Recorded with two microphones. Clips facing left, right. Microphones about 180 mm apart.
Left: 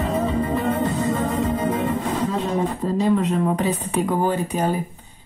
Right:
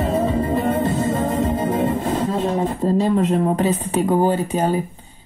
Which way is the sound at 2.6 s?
40° right (ahead or behind).